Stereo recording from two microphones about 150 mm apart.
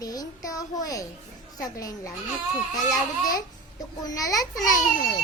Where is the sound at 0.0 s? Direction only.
25° left (ahead or behind).